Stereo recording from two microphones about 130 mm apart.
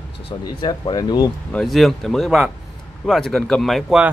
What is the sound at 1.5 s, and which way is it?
Speech, 5° left (ahead or behind).